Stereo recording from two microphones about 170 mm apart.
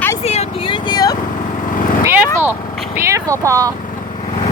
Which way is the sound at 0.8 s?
25° left (ahead or behind).